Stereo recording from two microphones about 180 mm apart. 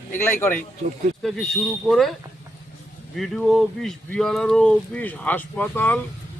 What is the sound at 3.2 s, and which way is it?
Speech, centre (ahead or behind).